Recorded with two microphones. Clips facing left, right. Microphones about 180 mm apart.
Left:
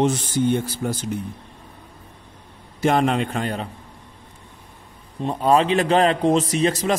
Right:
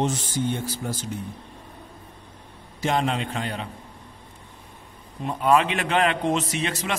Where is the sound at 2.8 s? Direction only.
55° left (ahead or behind).